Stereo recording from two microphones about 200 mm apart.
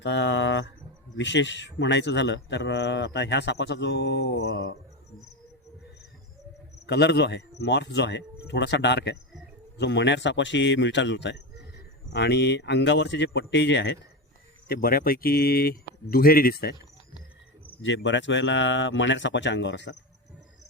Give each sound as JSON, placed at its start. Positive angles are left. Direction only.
{"t": 0.0, "sound": "a man's voice", "side_deg": 65}
{"t": 6.8, "sound": "a man's voice", "side_deg": 60}
{"t": 14.7, "sound": "speech", "side_deg": 45}
{"t": 17.8, "sound": "a man's voice", "side_deg": 65}